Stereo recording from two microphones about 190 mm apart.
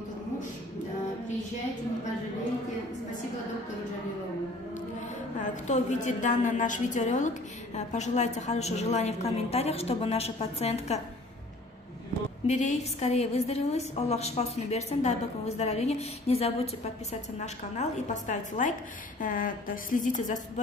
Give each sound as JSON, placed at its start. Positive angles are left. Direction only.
{"t": 5.4, "sound": "a woman's voice", "side_deg": 40}
{"t": 12.4, "sound": "a woman's voice", "side_deg": 40}